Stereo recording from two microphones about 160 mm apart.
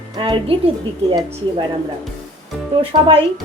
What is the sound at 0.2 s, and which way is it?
Speech, 35° right (ahead or behind).